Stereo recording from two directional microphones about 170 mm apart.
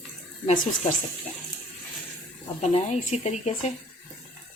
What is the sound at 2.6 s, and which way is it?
Speech, 40° left (ahead or behind).